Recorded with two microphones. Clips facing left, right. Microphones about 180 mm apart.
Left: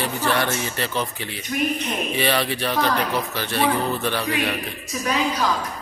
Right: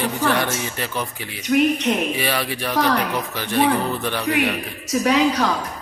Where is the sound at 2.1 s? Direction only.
10° right (ahead or behind).